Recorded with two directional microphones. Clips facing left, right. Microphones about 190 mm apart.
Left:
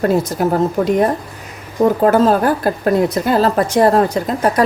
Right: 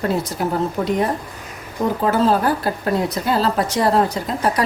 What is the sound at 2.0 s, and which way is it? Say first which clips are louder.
A woman's voice: left 2 dB; 50° left (ahead or behind).